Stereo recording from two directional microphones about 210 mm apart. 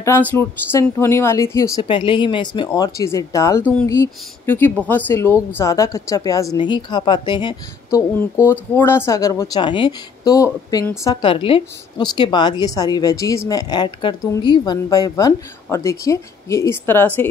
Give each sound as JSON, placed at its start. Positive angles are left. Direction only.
{"t": 0.0, "sound": "a woman's voice", "side_deg": 10}
{"t": 8.4, "sound": "speech", "side_deg": 10}